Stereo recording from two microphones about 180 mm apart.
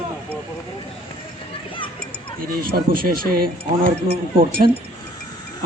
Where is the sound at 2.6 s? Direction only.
55° right (ahead or behind).